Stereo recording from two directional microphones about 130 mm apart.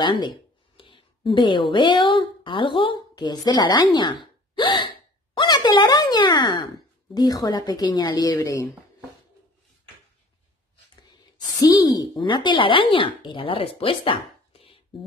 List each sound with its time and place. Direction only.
0.0 s a woman's voice: 35° left (ahead or behind)
11.6 s speech: 30° left (ahead or behind); by 14.8 s 45° left (ahead or behind)